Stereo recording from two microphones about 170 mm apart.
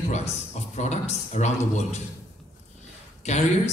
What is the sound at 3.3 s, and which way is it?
Speech, 40° left (ahead or behind).